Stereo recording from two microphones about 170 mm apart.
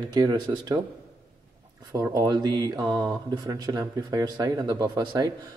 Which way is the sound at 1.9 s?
20° right (ahead or behind).